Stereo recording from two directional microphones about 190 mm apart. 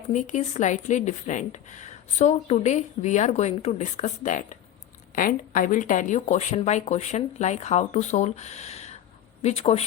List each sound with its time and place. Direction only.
0.1 s speech: 40° left (ahead or behind)